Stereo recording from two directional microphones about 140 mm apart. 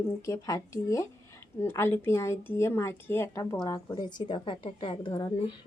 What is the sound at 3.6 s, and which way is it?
A woman's voice, 30° left (ahead or behind).